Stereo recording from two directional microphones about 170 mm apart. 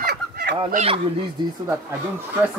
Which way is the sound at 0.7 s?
40° right (ahead or behind).